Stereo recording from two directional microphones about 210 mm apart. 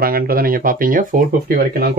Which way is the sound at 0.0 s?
45° right (ahead or behind).